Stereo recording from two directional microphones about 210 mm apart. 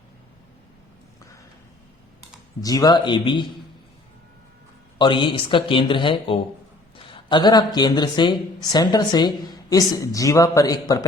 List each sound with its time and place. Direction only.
2.6 s speech: 15° left (ahead or behind)
4.9 s speech: 20° left (ahead or behind)